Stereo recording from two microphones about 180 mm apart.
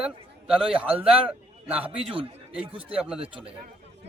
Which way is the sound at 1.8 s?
30° right (ahead or behind).